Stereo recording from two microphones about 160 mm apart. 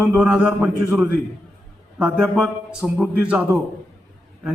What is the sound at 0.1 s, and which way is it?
A man's voice, 5° right (ahead or behind).